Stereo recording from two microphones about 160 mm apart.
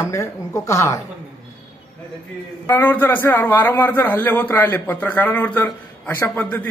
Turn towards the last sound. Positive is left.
turn(degrees=10)  # may be behind; listen again after turning